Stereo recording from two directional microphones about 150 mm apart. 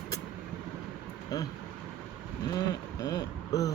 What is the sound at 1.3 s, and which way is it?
Speech, 25° left (ahead or behind).